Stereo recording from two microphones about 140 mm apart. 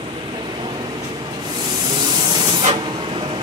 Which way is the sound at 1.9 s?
30° right (ahead or behind).